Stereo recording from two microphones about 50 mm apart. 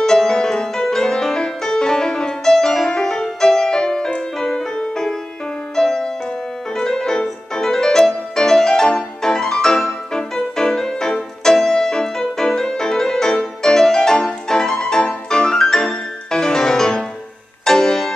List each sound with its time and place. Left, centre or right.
0.0 s music: centre